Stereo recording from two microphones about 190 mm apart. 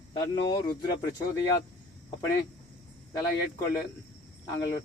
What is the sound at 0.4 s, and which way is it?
Speech, 20° left (ahead or behind).